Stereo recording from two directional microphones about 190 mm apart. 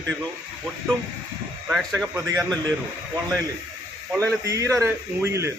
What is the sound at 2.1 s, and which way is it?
Speech, 15° right (ahead or behind).